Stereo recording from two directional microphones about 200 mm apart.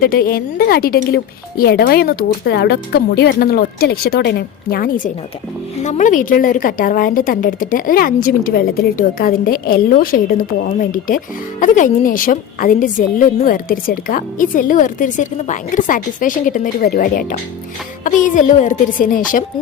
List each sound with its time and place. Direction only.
0.0 s a woman's voice: 45° left (ahead or behind)